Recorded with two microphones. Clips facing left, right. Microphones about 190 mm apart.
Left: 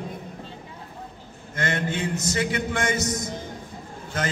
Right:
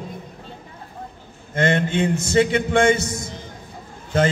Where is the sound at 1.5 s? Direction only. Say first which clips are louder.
Right 7 dB; 25° right (ahead or behind).